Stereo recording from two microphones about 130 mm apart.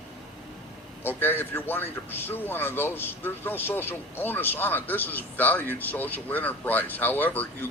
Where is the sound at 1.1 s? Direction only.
15° left (ahead or behind).